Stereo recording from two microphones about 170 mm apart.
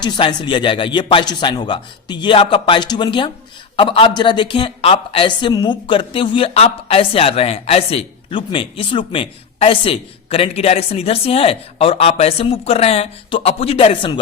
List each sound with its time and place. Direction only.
0.0 s speech: 25° left (ahead or behind)